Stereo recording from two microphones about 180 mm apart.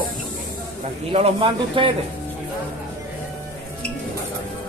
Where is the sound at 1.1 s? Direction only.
30° right (ahead or behind).